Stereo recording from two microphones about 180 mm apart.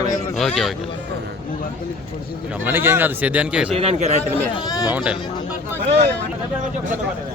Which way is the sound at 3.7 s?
35° right (ahead or behind).